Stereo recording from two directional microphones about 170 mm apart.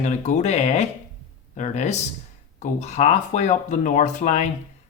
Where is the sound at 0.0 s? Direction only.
45° left (ahead or behind).